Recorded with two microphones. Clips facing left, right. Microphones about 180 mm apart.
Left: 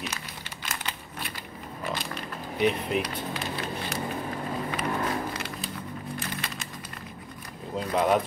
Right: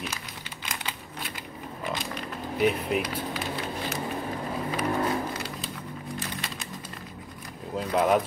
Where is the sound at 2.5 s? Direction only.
5° right (ahead or behind).